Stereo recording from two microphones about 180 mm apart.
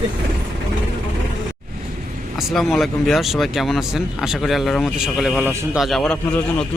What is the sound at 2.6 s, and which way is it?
A man's voice, centre (ahead or behind).